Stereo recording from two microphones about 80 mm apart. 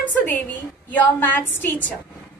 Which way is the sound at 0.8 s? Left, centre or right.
Left.